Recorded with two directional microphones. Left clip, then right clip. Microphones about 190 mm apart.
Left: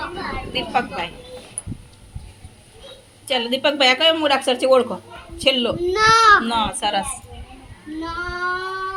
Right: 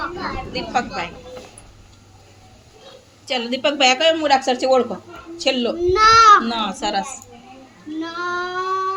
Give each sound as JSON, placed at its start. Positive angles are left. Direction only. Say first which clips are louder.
{"t": 0.5, "sound": "speech", "louder": "left 1 dB", "side_deg": 0}
{"t": 3.2, "sound": "speech", "louder": "left 1 dB", "side_deg": 0}
{"t": 5.8, "sound": "a child's voice", "louder": "right 3 dB", "side_deg": 20}
{"t": 6.4, "sound": "speech", "louder": "left 2 dB", "side_deg": 0}
{"t": 8.0, "sound": "child singing", "louder": "even", "side_deg": 5}